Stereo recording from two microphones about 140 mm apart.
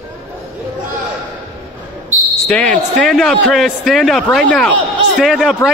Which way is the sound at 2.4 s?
5° left (ahead or behind).